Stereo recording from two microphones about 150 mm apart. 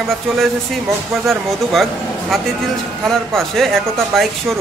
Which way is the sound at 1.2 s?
Centre (ahead or behind).